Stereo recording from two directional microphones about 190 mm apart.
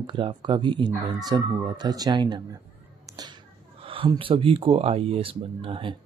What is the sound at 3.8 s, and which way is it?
Speech, 30° right (ahead or behind).